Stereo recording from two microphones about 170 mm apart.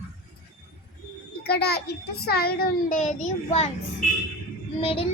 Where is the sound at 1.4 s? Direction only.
70° left (ahead or behind); by 3.6 s 45° left (ahead or behind).